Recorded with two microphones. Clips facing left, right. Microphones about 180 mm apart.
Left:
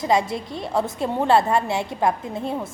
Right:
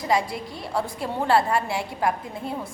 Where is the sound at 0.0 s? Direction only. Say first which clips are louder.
Left 3 dB; 25° left (ahead or behind).